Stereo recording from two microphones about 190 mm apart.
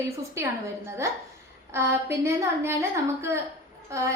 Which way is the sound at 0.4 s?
15° right (ahead or behind).